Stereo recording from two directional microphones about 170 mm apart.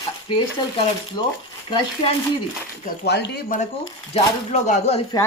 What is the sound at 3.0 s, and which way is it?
Speech, 85° left.